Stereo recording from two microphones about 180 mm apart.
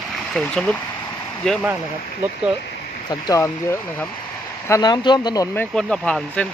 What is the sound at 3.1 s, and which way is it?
Speech, 20° left (ahead or behind).